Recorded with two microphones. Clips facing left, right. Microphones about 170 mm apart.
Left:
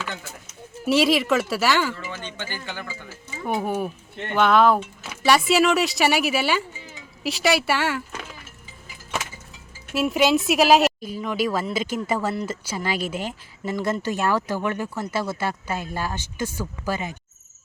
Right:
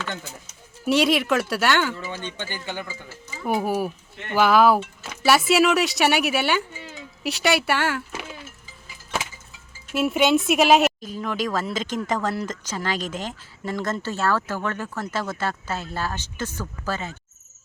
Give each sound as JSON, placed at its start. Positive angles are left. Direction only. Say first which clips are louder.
{"t": 0.9, "sound": "speech", "louder": "left 1 dB", "side_deg": 0}
{"t": 2.0, "sound": "speech", "louder": "right 1 dB", "side_deg": -20}
{"t": 3.4, "sound": "speech", "louder": "right 2 dB", "side_deg": -5}
{"t": 9.9, "sound": "speech", "louder": "even", "side_deg": 0}